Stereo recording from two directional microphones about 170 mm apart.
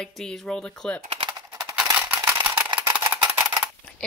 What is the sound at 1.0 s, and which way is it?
Typing, 30° right (ahead or behind).